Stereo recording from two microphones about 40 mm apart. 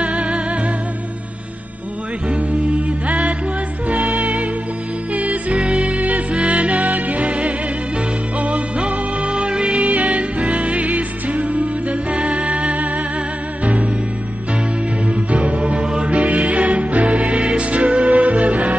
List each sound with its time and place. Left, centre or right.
0.0 s music: right
3.1 s music: right
15.0 s music: right
15.8 s music: right
16.1 s music: right